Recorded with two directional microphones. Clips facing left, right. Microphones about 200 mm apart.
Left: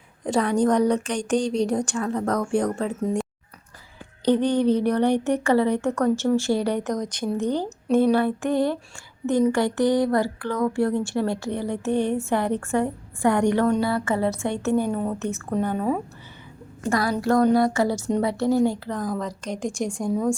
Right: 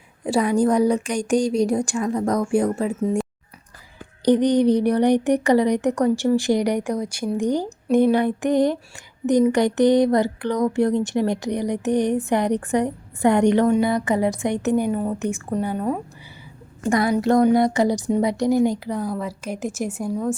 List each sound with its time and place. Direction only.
0.3 s speech: 10° right (ahead or behind)
4.3 s speech: 15° right (ahead or behind)
9.2 s a sound: 20° right (ahead or behind)
13.7 s speech: 15° right (ahead or behind)
15.6 s a woman's voice: 5° right (ahead or behind)
16.9 s a sound: 20° right (ahead or behind)
18.1 s speech: 15° right (ahead or behind)